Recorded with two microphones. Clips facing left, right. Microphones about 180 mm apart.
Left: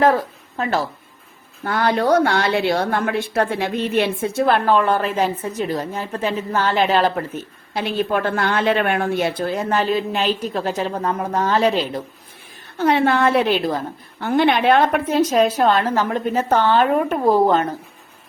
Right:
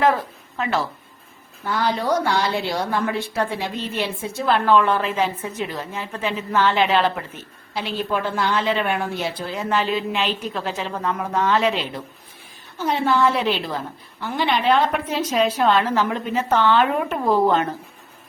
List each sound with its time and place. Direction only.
0.5 s speech: 40° left (ahead or behind)
1.6 s a woman's voice: 55° left (ahead or behind); by 7.3 s 40° left (ahead or behind)
7.7 s a woman's voice: 55° left (ahead or behind)
12.7 s a woman's voice: 60° left (ahead or behind); by 17.7 s 40° left (ahead or behind)